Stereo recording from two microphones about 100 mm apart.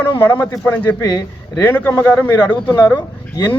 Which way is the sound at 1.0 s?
40° left (ahead or behind).